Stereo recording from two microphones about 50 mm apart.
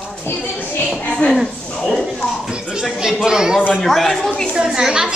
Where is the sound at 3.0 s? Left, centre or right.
Centre.